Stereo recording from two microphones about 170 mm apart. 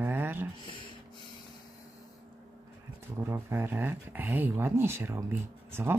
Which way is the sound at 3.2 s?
15° right (ahead or behind).